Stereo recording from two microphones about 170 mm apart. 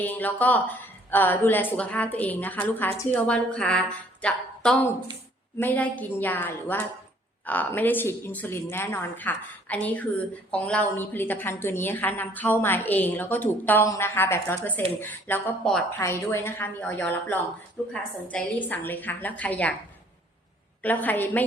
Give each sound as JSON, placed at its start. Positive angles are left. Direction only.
{"t": 0.0, "sound": "a woman's voice", "side_deg": 10}
{"t": 20.8, "sound": "a woman's voice", "side_deg": 10}